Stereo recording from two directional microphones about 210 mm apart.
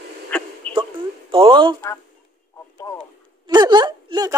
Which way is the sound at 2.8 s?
15° left (ahead or behind).